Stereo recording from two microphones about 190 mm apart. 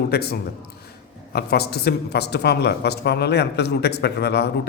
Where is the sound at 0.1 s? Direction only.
55° left (ahead or behind).